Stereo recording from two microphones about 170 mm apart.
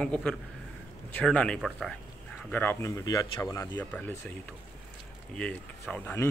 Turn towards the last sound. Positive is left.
turn(degrees=10)  # may be behind; listen again after turning